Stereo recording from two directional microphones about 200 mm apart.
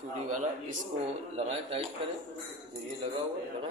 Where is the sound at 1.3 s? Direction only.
30° right (ahead or behind).